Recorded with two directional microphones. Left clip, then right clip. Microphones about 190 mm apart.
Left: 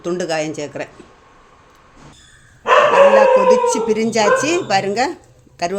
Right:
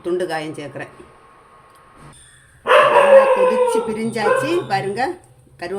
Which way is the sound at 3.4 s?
40° left (ahead or behind).